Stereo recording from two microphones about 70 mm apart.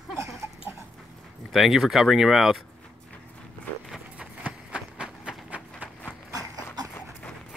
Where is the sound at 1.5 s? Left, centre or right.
Centre.